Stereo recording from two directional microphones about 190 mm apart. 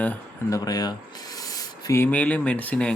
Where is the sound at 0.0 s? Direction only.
10° left (ahead or behind).